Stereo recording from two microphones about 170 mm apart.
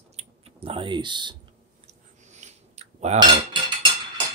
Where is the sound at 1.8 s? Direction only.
45° right (ahead or behind).